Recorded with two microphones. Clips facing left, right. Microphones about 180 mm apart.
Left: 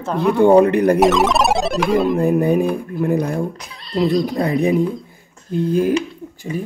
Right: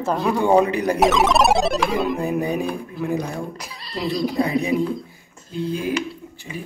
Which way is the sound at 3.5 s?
5° right (ahead or behind).